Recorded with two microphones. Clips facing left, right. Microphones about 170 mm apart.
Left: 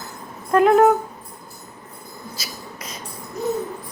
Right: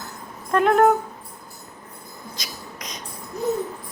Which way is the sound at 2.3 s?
5° left (ahead or behind).